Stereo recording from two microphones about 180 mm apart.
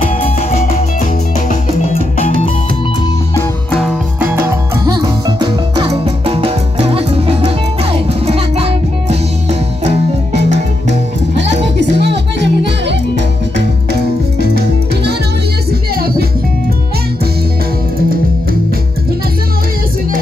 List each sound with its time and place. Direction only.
4.2 s music: 10° right (ahead or behind); by 11.0 s 40° right (ahead or behind)
11.9 s music: 70° right (ahead or behind)
14.4 s music: 65° right (ahead or behind)